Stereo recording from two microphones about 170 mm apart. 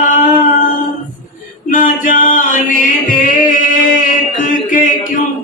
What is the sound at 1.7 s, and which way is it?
Music, 50° left (ahead or behind).